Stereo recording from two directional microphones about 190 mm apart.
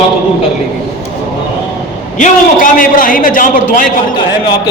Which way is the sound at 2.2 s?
45° left (ahead or behind).